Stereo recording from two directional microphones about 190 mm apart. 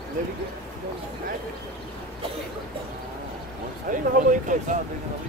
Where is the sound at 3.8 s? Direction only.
45° right (ahead or behind).